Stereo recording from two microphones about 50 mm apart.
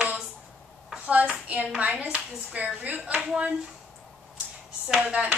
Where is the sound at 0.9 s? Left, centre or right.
Right.